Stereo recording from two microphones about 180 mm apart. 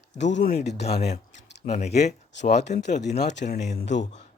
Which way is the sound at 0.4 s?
65° left (ahead or behind).